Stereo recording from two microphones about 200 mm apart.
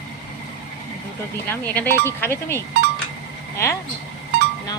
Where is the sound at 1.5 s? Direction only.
10° left (ahead or behind).